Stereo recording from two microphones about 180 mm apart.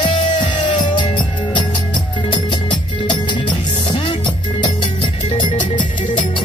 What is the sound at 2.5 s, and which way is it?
Music, 25° left (ahead or behind).